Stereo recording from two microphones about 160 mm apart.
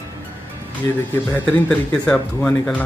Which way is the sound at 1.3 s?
10° left (ahead or behind).